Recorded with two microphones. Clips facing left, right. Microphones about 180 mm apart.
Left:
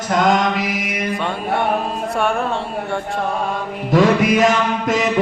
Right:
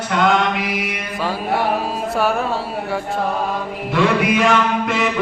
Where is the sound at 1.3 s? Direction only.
5° right (ahead or behind).